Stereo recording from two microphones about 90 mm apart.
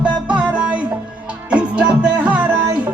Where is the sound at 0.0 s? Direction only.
15° right (ahead or behind).